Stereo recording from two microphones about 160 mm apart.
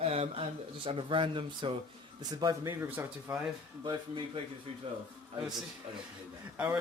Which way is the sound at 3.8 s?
30° right (ahead or behind).